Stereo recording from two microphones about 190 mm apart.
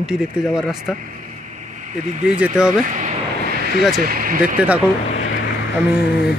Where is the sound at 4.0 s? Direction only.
50° right (ahead or behind).